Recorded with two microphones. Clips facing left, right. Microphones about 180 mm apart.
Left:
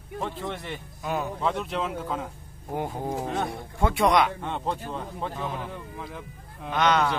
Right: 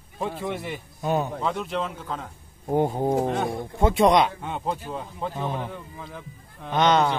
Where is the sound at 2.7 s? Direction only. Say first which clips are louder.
Right 8 dB; 30° right (ahead or behind).